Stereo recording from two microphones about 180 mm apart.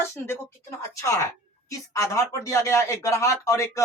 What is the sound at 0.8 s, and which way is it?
Speech, 15° left (ahead or behind).